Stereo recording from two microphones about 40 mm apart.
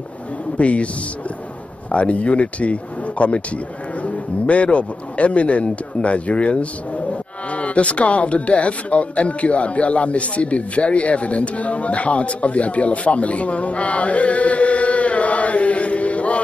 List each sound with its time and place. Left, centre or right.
0.6 s a man's voice: left
1.9 s speech: left